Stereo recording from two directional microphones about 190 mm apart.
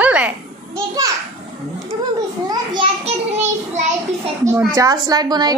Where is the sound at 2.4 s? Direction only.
25° right (ahead or behind).